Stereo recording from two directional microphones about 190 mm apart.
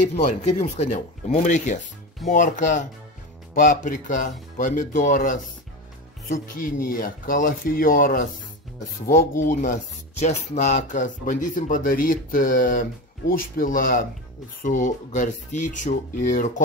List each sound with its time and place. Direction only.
0.1 s speech: 40° left (ahead or behind)